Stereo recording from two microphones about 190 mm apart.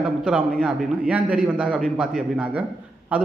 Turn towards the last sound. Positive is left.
turn(degrees=-5)  # may be behind; listen again after turning